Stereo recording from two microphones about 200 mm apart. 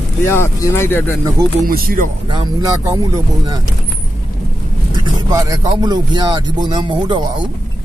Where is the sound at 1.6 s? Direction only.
45° right (ahead or behind).